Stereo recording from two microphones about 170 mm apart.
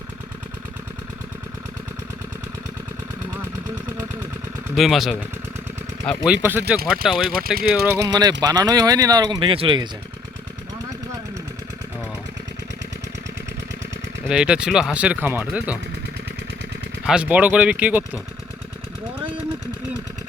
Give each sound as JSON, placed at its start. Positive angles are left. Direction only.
{"t": 4.7, "sound": "speech", "side_deg": 0}
{"t": 6.2, "sound": "speech", "side_deg": -10}
{"t": 7.3, "sound": "speech", "side_deg": -60}
{"t": 8.1, "sound": "speech", "side_deg": -20}
{"t": 14.3, "sound": "speech", "side_deg": -5}
{"t": 17.1, "sound": "speech", "side_deg": -5}